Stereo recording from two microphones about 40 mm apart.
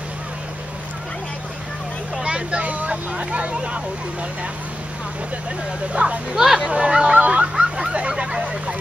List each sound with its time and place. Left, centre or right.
2.2 s vehicle: right
6.0 s speech: right
6.3 s speech: centre
6.9 s speech: right
7.2 s a sound: right
8.1 s speech: centre